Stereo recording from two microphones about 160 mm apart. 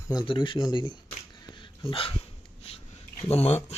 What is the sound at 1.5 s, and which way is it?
Dog, 30° left (ahead or behind).